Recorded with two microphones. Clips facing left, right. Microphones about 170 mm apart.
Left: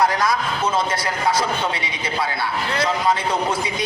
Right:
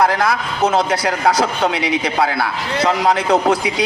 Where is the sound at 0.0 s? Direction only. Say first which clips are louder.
Right 3 dB; 65° right (ahead or behind).